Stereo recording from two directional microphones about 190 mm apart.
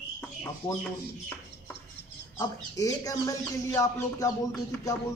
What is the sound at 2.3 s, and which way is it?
Speech, 20° left (ahead or behind).